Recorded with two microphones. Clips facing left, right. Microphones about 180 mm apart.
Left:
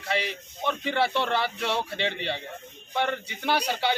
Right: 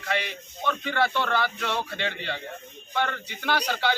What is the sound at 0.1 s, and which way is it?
Speech, 30° left (ahead or behind).